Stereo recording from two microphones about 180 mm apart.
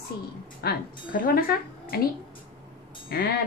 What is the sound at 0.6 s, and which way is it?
Speech, 55° left (ahead or behind).